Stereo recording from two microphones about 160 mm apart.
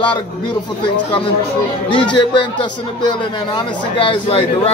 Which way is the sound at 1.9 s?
30° left (ahead or behind).